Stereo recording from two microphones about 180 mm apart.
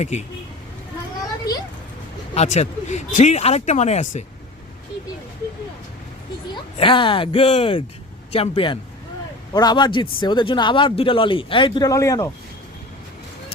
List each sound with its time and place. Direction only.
0.0 s speech: 40° left (ahead or behind)
2.3 s speech: 40° left (ahead or behind)
6.5 s a man's voice: 30° left (ahead or behind)